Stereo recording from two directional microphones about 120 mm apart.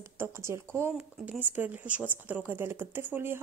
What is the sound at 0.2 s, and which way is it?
Speech, 20° right (ahead or behind).